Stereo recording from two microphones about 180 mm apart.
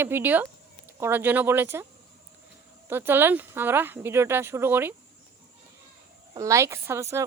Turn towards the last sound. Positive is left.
turn(degrees=-15)  # may be behind; listen again after turning